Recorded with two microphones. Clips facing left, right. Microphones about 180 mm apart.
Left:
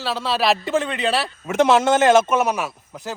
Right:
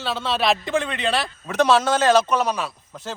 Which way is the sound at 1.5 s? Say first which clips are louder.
Left 2 dB; 20° left (ahead or behind).